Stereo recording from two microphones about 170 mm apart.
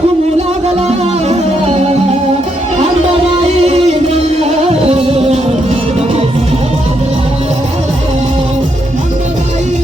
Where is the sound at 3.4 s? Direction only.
40° right (ahead or behind).